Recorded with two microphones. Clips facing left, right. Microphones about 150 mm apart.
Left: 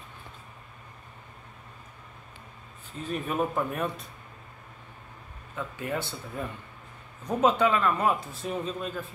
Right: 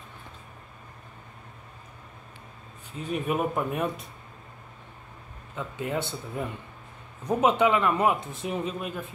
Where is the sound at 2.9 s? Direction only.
10° right (ahead or behind).